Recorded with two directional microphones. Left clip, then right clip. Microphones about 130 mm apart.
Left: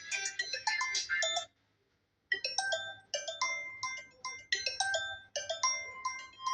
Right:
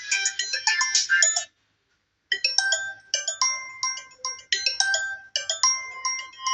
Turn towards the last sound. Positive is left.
turn(degrees=35)  # may be behind; listen again after turning